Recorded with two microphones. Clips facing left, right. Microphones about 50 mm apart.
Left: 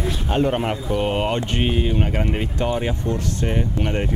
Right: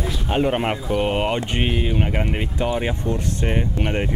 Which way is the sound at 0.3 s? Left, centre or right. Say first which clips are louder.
Right 1 dB; centre.